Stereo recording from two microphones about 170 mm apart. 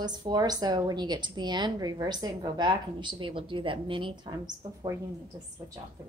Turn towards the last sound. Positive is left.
turn(degrees=-20)  # may be behind; listen again after turning